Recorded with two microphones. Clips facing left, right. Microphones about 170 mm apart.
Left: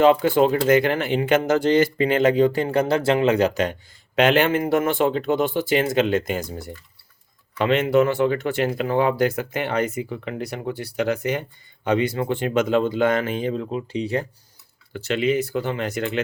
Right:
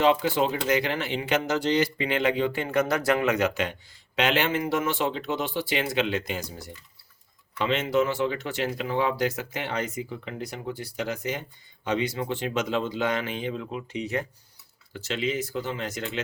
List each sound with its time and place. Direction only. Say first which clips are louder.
0.0 s speech: left 6 dB; 50° left (ahead or behind); by 14.3 s 30° left (ahead or behind)
14.9 s speech: left 7 dB; 60° left (ahead or behind)